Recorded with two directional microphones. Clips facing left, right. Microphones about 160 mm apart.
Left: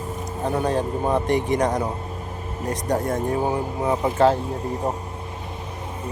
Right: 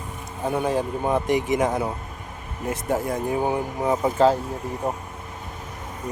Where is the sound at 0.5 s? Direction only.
10° right (ahead or behind).